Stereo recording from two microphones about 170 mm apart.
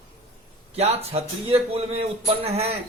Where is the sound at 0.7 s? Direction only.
35° right (ahead or behind).